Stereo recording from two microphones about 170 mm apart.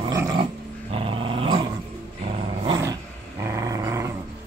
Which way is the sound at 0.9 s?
30° right (ahead or behind).